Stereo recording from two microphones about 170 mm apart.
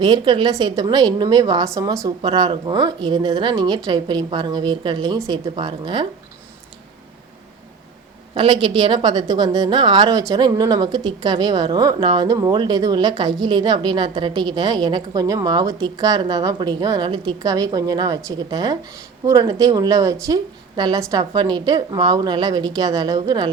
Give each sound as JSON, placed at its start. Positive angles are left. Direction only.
{"t": 0.0, "sound": "a woman's voice", "side_deg": -25}
{"t": 8.4, "sound": "a woman's voice", "side_deg": -30}